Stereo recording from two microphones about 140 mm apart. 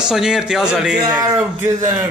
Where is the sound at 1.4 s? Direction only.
20° right (ahead or behind).